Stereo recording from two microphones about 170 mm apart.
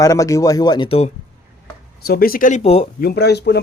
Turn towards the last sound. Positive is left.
turn(degrees=80)